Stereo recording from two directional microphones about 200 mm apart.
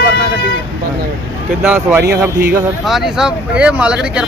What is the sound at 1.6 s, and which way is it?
Speech, 10° right (ahead or behind).